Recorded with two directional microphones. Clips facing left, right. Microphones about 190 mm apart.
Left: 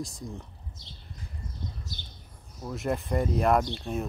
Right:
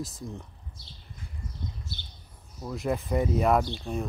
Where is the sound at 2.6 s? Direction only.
Centre (ahead or behind).